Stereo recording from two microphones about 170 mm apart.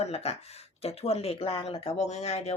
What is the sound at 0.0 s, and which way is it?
Speech, 40° left (ahead or behind).